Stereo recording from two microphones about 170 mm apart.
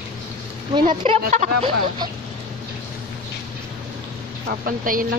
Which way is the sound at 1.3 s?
40° right (ahead or behind).